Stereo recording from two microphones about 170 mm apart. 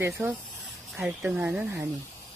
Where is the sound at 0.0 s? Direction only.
15° right (ahead or behind).